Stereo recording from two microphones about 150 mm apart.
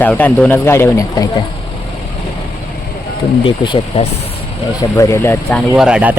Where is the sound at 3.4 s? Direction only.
35° left (ahead or behind).